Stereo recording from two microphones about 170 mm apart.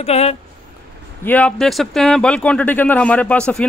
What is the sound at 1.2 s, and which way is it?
Speech, 10° left (ahead or behind).